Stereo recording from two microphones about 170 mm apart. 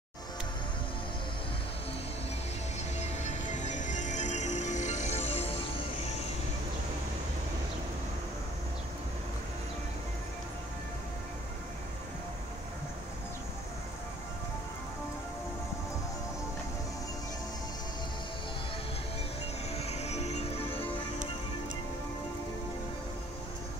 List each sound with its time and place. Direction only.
3.0 s music: 45° left (ahead or behind)
19.7 s music: 40° left (ahead or behind)